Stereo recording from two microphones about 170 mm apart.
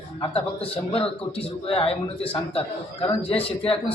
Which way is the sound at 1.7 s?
35° left (ahead or behind).